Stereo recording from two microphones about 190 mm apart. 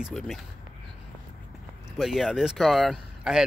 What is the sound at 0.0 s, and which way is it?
Speech, centre (ahead or behind).